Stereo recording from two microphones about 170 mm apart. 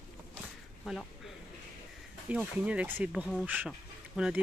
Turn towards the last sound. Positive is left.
turn(degrees=-5)  # may be behind; listen again after turning